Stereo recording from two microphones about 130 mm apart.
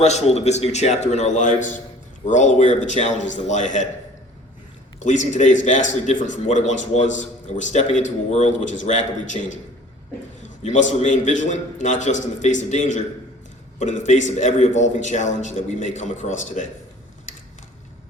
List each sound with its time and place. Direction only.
0.0 s a man's voice: 60° left (ahead or behind)
4.9 s a man's voice: 65° left (ahead or behind)